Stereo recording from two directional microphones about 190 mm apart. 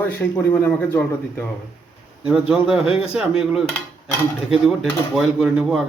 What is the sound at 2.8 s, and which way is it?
Speech, 30° left (ahead or behind).